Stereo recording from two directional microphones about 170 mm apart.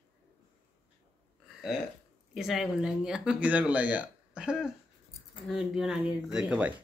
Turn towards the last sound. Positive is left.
turn(degrees=-5)  # may be behind; listen again after turning